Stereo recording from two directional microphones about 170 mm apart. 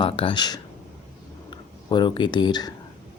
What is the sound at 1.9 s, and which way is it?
Speech, 30° left (ahead or behind).